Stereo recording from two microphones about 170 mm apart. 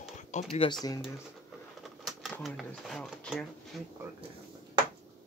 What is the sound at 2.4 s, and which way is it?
Speech, centre (ahead or behind).